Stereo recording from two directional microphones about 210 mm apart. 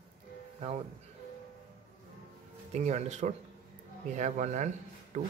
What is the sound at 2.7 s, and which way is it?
Speech, 30° right (ahead or behind).